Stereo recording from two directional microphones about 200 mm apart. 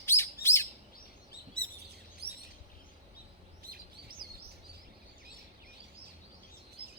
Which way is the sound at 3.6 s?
50° right (ahead or behind).